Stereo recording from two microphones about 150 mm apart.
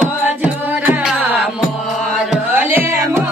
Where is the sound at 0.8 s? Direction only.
5° right (ahead or behind).